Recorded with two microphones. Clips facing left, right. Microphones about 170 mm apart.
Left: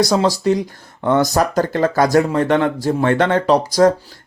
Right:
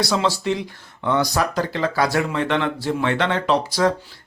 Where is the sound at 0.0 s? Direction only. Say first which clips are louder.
Left 6 dB; 40° left (ahead or behind).